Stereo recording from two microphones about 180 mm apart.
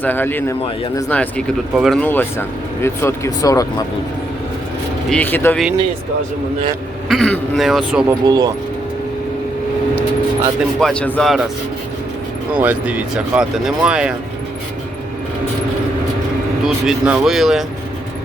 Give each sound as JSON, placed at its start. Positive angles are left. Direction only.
{"t": 0.0, "sound": "speech", "side_deg": 10}
{"t": 2.0, "sound": "speech", "side_deg": 10}
{"t": 5.0, "sound": "speech", "side_deg": 10}
{"t": 7.1, "sound": "speech", "side_deg": 0}
{"t": 8.2, "sound": "speech", "side_deg": -20}
{"t": 10.8, "sound": "speech", "side_deg": 5}
{"t": 12.5, "sound": "speech", "side_deg": -10}
{"t": 16.6, "sound": "speech", "side_deg": -5}